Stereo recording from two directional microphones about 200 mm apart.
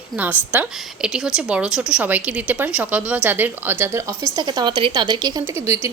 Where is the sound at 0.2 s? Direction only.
10° right (ahead or behind).